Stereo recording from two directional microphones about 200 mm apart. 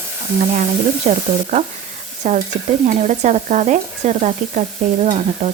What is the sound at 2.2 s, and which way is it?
Speech, 40° right (ahead or behind).